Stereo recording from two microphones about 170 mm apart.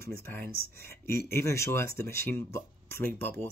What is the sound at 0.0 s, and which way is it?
Speech, 10° left (ahead or behind).